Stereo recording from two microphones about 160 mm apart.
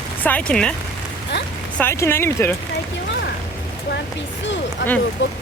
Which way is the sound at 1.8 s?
15° left (ahead or behind).